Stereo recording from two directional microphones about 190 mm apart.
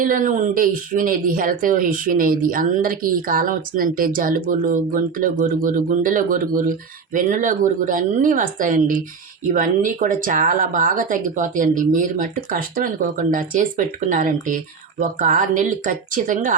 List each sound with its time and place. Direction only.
0.0 s speech: 45° right (ahead or behind)